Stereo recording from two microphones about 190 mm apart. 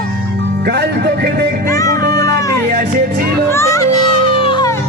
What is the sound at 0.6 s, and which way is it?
Music, 60° right (ahead or behind).